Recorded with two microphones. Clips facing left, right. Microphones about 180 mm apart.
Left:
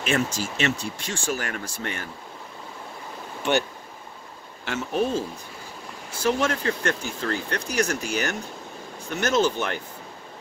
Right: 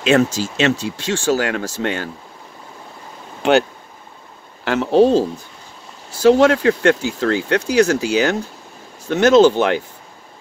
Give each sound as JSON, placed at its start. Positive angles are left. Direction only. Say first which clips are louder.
{"t": 0.1, "sound": "speech", "louder": "right 10 dB", "side_deg": -90}
{"t": 4.6, "sound": "speech", "louder": "right 12 dB", "side_deg": -85}
{"t": 6.2, "sound": "speech", "louder": "right 12 dB", "side_deg": -90}